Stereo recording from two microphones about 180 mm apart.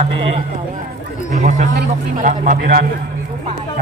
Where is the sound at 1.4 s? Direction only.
45° right (ahead or behind).